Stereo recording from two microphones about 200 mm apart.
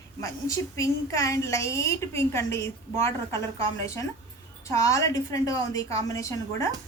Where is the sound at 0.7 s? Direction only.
15° left (ahead or behind).